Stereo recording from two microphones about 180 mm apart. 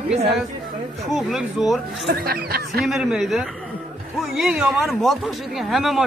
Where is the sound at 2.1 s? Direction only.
60° right (ahead or behind).